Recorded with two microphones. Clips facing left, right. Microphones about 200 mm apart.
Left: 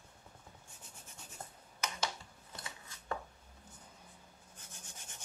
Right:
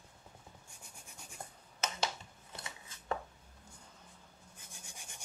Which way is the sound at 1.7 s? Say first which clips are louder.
Right 2 dB; 25° right (ahead or behind).